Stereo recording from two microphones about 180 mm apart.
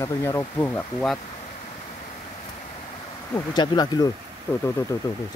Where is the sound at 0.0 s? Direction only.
15° left (ahead or behind).